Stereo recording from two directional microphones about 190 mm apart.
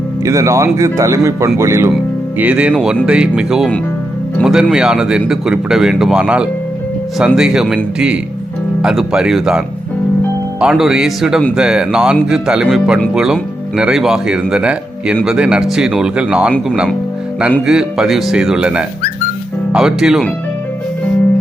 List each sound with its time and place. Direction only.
0.3 s speech: 15° right (ahead or behind)